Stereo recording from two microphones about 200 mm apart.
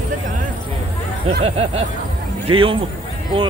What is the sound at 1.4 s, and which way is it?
Speech, 30° right (ahead or behind).